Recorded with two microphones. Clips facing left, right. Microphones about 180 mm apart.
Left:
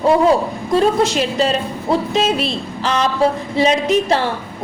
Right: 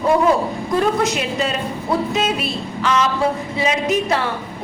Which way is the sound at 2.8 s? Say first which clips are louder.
Right 1 dB; 35° left (ahead or behind).